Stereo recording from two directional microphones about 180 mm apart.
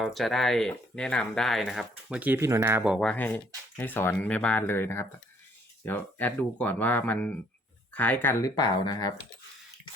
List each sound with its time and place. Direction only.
0.0 s speech: centre (ahead or behind)
3.0 s speech: 5° left (ahead or behind)